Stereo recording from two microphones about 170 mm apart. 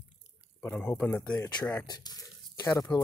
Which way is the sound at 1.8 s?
25° left (ahead or behind).